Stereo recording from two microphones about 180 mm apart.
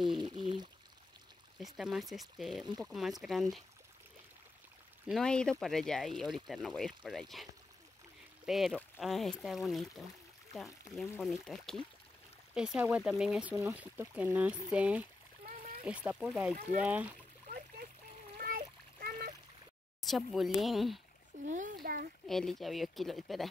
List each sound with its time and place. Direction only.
0.0 s pour: 25° right (ahead or behind)
1.6 s speech: centre (ahead or behind)
5.0 s speech: centre (ahead or behind)
8.5 s speech: centre (ahead or behind)
17.5 s splash: 50° right (ahead or behind)
20.1 s speech: centre (ahead or behind)
21.5 s a child's voice: 45° right (ahead or behind)
21.8 s speech: 55° right (ahead or behind)
22.2 s speech: centre (ahead or behind)